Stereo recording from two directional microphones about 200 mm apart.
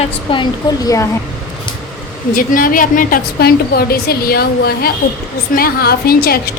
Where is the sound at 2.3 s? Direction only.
45° left (ahead or behind).